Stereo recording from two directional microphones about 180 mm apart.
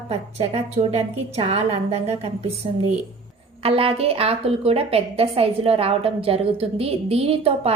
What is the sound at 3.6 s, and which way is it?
A woman's voice, 30° right (ahead or behind).